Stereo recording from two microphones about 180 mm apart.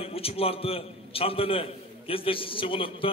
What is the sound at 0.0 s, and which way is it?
A man's voice, 30° left (ahead or behind).